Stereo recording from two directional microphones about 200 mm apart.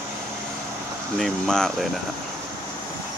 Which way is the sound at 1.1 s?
Centre (ahead or behind).